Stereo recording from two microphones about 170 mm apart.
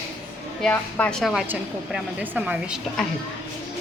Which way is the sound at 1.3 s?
5° right (ahead or behind).